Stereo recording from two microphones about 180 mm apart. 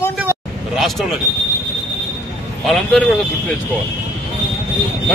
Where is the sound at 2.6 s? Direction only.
5° left (ahead or behind).